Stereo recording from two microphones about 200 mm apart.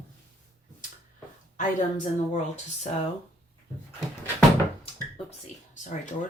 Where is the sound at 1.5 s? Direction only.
40° left (ahead or behind).